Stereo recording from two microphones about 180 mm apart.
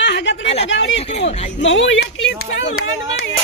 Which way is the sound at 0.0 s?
80° left.